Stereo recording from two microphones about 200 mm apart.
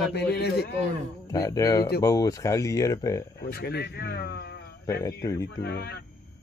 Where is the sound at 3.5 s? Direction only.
55° left (ahead or behind).